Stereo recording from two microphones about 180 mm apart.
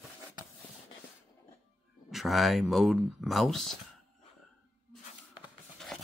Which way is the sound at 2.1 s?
Centre (ahead or behind).